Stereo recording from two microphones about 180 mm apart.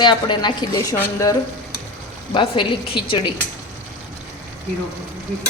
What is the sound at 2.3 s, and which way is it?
A woman's voice, 30° left (ahead or behind).